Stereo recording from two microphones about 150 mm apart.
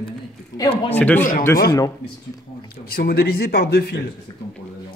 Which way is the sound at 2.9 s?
90° left.